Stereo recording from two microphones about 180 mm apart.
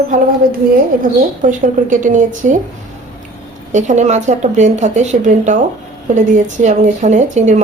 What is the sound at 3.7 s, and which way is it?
Speech, 40° right (ahead or behind).